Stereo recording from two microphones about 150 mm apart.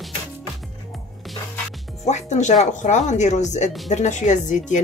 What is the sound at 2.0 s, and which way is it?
Speech, 50° left (ahead or behind).